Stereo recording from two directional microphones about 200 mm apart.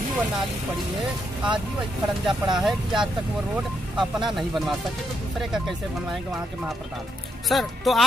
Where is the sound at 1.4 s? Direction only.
Centre (ahead or behind).